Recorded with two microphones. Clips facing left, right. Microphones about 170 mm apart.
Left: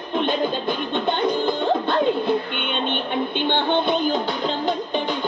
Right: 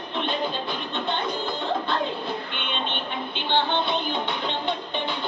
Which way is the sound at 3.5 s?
50° left (ahead or behind).